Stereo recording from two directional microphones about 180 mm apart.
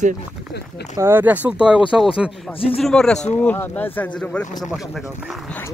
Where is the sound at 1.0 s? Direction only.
10° right (ahead or behind).